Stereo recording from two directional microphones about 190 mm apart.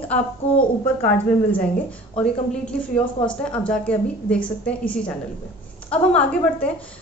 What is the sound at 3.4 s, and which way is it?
A woman's voice, 5° left (ahead or behind).